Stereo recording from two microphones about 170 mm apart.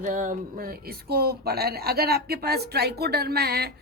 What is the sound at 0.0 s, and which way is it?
A woman's voice, 50° right (ahead or behind).